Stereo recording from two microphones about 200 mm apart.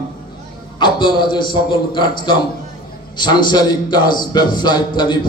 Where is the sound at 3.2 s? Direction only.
20° left (ahead or behind).